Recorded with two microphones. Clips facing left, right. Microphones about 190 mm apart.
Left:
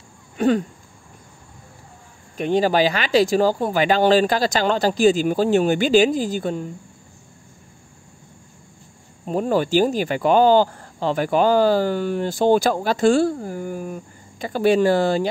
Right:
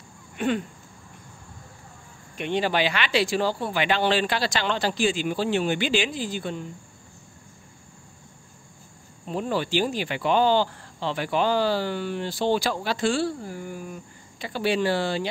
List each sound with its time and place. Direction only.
0.4 s speech: 40° left (ahead or behind)
2.3 s speech: 40° left (ahead or behind)
9.2 s speech: 45° left (ahead or behind)